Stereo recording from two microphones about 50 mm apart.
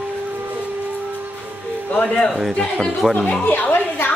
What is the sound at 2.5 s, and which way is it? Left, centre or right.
Speech, centre.